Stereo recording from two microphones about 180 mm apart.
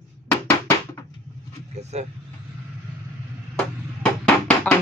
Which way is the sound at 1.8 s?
40° right (ahead or behind).